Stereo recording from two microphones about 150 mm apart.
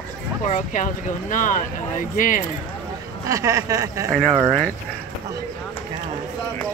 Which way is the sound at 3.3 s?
20° right (ahead or behind).